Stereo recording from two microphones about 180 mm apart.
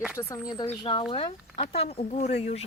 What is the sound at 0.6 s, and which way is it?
Speech, 30° left (ahead or behind).